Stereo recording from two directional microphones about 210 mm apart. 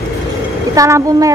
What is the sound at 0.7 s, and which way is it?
Speech, 15° right (ahead or behind).